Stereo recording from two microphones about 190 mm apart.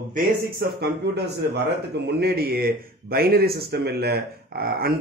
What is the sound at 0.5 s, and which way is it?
Speech, 60° right (ahead or behind).